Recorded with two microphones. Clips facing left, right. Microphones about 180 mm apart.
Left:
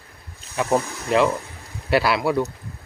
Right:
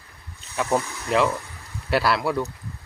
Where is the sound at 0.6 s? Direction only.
5° left (ahead or behind).